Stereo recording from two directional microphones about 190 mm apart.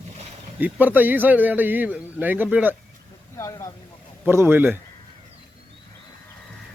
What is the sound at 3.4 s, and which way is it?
Boat, 15° left (ahead or behind).